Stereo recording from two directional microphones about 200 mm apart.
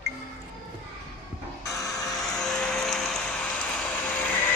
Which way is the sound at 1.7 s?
15° left (ahead or behind).